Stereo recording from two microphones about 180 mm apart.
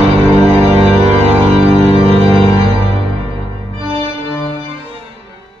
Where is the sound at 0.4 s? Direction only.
35° right (ahead or behind).